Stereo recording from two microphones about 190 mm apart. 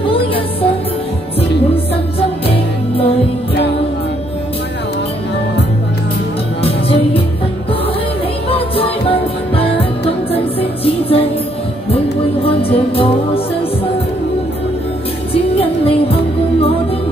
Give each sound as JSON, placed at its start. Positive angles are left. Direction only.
{"t": 0.0, "sound": "music", "side_deg": 30}
{"t": 6.6, "sound": "music", "side_deg": 30}
{"t": 8.5, "sound": "music", "side_deg": 30}
{"t": 12.4, "sound": "music", "side_deg": 30}
{"t": 15.3, "sound": "music", "side_deg": 30}